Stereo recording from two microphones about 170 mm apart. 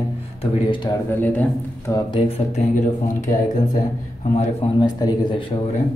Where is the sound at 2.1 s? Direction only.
40° left (ahead or behind).